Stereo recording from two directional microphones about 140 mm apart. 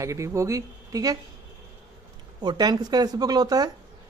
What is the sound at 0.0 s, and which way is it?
Speech, 20° right (ahead or behind).